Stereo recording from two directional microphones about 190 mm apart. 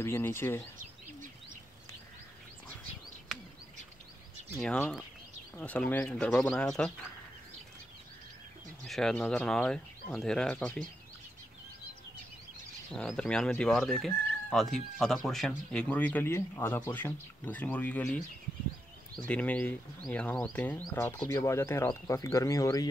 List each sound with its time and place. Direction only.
0.0 s speech: 10° left (ahead or behind)
0.7 s bird: 45° right (ahead or behind)
4.6 s speech: 5° left (ahead or behind)
8.8 s speech: centre (ahead or behind)
12.9 s speech: 5° left (ahead or behind)